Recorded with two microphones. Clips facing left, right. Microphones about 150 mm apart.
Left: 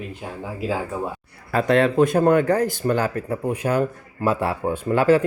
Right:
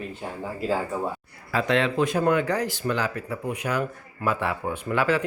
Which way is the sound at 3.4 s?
30° left (ahead or behind).